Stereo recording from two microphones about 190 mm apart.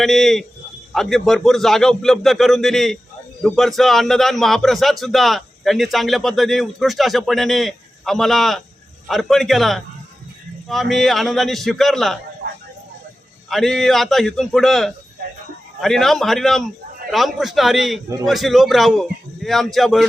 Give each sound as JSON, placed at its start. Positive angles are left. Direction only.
{"t": 0.0, "sound": "a man's voice", "side_deg": 0}
{"t": 12.4, "sound": "a sound", "side_deg": -55}
{"t": 13.5, "sound": "a man's voice", "side_deg": 0}